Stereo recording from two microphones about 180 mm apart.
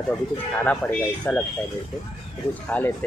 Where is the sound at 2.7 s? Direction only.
10° left (ahead or behind).